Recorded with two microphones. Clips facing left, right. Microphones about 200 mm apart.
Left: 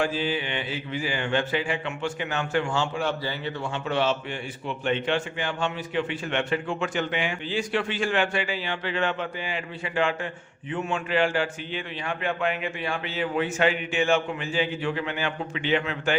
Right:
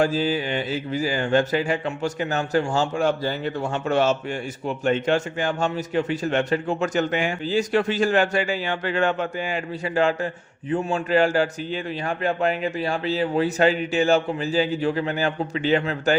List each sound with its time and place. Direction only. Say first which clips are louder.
0.0 s a man's voice: right 5 dB; 40° right (ahead or behind)